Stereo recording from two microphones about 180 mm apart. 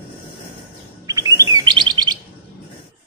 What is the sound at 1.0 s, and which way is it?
Chirp, 20° right (ahead or behind).